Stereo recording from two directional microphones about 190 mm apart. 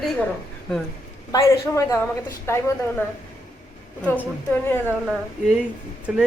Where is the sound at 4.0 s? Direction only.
10° left (ahead or behind).